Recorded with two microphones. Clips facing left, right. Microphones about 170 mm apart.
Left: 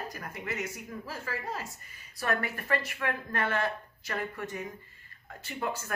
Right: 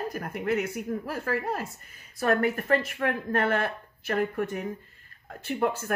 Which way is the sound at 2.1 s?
50° right (ahead or behind).